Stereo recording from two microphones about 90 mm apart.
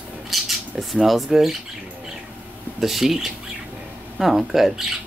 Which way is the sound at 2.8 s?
Centre (ahead or behind).